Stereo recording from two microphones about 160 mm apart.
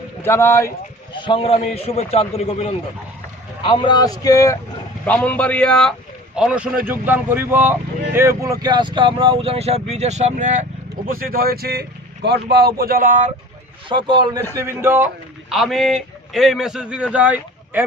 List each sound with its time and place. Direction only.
0.2 s a man's voice: 15° left (ahead or behind)
1.1 s a man's voice: 30° left (ahead or behind)
5.0 s a man's voice: 10° left (ahead or behind)
6.3 s speech: 5° right (ahead or behind); by 10.7 s 50° right (ahead or behind)
11.1 s speech: 65° right (ahead or behind)
13.8 s a man's voice: 30° right (ahead or behind)
14.5 s speech: 15° right (ahead or behind)
15.4 s a man's voice: centre (ahead or behind)